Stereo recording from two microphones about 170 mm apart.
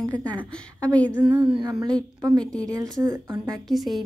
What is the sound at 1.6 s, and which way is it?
A woman's voice, 20° right (ahead or behind).